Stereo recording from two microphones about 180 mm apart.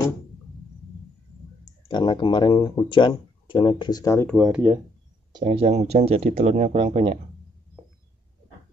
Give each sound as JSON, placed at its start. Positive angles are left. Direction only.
{"t": 1.9, "sound": "speech", "side_deg": 25}
{"t": 4.3, "sound": "speech", "side_deg": 0}
{"t": 5.3, "sound": "speech", "side_deg": -30}